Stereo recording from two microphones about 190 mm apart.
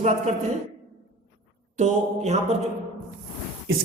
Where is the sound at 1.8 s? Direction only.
35° right (ahead or behind).